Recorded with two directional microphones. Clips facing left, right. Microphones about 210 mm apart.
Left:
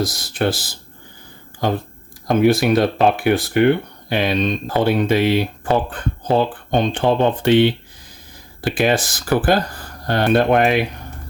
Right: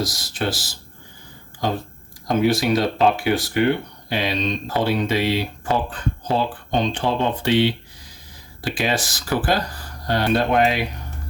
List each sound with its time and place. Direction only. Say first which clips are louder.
0.0 s speech: left 5 dB; 55° left (ahead or behind)
2.2 s speech: left 4 dB; 55° left (ahead or behind)